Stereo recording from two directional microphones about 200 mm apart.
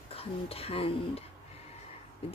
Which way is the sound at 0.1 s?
30° left (ahead or behind).